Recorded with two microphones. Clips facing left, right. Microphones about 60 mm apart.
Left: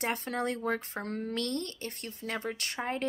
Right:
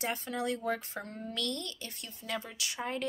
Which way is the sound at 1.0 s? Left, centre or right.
Left.